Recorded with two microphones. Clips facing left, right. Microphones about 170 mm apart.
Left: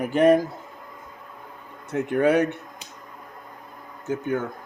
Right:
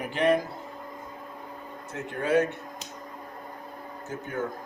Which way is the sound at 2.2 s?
70° left (ahead or behind).